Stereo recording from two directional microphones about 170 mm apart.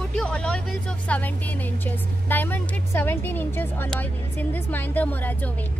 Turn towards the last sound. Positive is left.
turn(degrees=10)  # may be behind; listen again after turning